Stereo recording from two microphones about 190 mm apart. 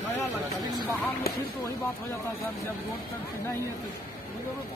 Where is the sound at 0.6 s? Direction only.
20° right (ahead or behind).